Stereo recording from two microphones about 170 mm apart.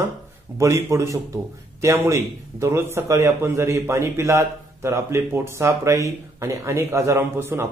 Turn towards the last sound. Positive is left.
turn(degrees=-15)  # may be behind; listen again after turning